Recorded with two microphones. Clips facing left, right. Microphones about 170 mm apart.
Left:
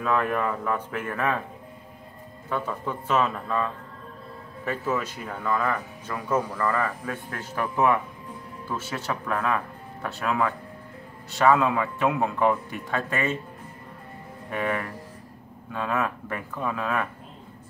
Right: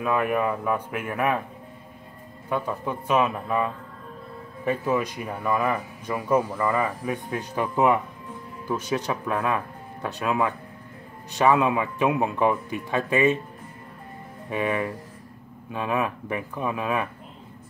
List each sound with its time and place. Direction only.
0.0 s speech: 15° right (ahead or behind)
2.5 s speech: 15° right (ahead or behind)
14.5 s speech: 15° right (ahead or behind)